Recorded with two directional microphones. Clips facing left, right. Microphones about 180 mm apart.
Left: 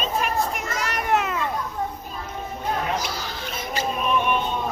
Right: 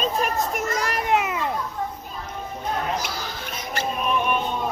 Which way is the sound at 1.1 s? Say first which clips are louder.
Even; 10° right (ahead or behind).